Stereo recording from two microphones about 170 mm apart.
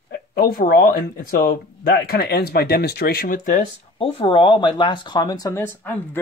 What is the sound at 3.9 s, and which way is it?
Speech, 35° left (ahead or behind).